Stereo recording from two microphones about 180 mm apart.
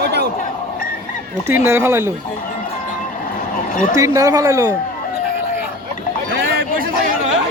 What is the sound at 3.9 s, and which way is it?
Speech, 20° right (ahead or behind).